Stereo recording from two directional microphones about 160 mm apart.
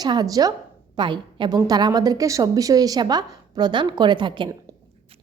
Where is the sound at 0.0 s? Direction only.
25° right (ahead or behind).